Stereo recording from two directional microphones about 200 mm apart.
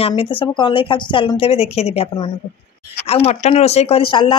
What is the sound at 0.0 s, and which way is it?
Speech, 25° left (ahead or behind).